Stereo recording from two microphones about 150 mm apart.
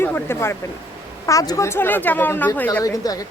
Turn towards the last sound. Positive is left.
turn(degrees=25)  # may be behind; listen again after turning